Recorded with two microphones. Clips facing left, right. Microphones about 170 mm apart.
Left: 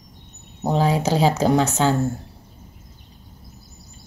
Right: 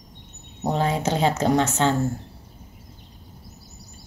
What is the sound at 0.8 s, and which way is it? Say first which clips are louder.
Speech: left 3 dB; 30° left (ahead or behind).